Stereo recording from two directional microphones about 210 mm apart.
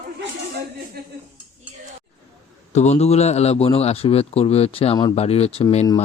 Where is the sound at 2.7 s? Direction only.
35° left (ahead or behind).